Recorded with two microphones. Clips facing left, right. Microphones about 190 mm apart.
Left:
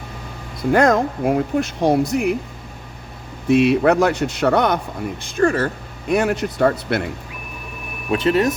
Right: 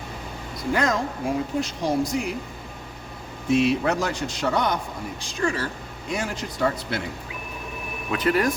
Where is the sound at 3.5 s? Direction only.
60° left (ahead or behind).